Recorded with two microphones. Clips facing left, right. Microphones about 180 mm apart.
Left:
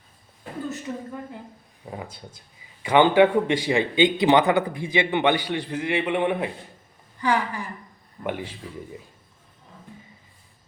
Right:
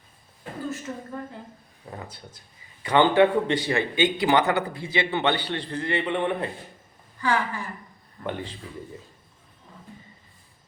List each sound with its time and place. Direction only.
1.9 s a man's voice: 10° left (ahead or behind)